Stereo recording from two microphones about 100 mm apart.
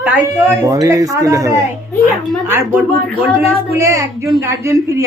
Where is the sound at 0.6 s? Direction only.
35° right (ahead or behind).